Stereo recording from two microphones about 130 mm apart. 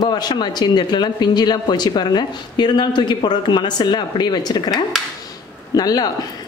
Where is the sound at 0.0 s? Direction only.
35° left (ahead or behind).